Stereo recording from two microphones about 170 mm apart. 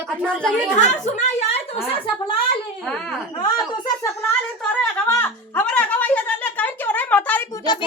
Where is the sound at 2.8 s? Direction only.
5° left (ahead or behind).